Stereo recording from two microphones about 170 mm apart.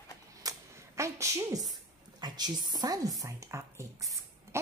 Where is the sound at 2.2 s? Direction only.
25° right (ahead or behind).